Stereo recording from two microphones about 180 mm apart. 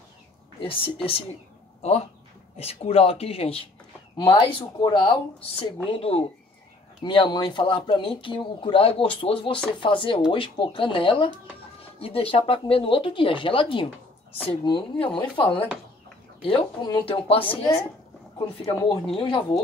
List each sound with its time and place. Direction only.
0.6 s speech: 30° left (ahead or behind)